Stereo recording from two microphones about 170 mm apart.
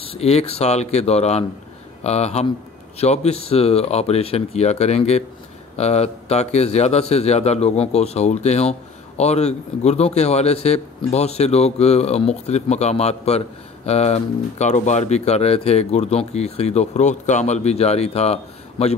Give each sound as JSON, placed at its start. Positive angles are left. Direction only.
{"t": 0.0, "sound": "a man's voice", "side_deg": 35}